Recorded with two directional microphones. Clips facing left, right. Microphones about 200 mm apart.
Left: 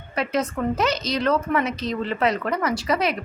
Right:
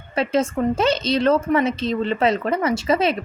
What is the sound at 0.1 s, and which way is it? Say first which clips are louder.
A woman's voice: right 4 dB; 25° right (ahead or behind).